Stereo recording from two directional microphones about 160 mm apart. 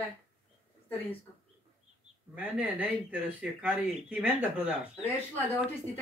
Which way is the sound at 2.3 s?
10° right (ahead or behind).